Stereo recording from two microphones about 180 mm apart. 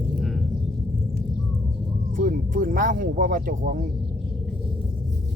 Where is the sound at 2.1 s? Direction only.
50° right (ahead or behind).